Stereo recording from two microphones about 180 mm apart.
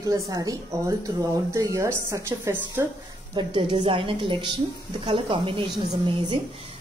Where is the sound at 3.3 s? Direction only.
25° right (ahead or behind).